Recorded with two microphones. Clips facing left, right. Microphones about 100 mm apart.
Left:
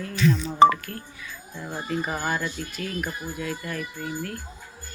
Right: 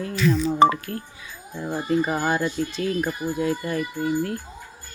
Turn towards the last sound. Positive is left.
turn(degrees=-30)  # may be behind; listen again after turning